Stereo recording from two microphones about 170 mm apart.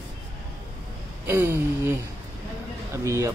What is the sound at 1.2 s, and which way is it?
Speech, 15° right (ahead or behind).